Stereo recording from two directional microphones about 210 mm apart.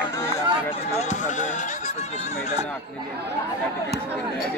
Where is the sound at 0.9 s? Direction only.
35° left (ahead or behind).